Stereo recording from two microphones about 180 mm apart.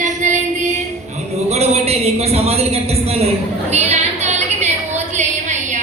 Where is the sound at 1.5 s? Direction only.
35° right (ahead or behind).